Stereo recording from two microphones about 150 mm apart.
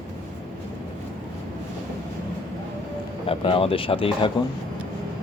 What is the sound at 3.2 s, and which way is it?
Speech, 35° left (ahead or behind).